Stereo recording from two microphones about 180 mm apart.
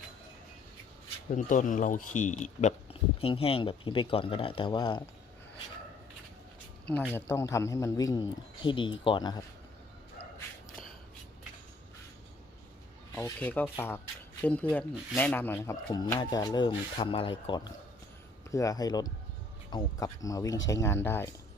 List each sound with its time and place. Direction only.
1.5 s speech: 45° left (ahead or behind); by 5.0 s 25° left (ahead or behind)
7.1 s a man's voice: 15° left (ahead or behind)
13.1 s a man's voice: 10° left (ahead or behind)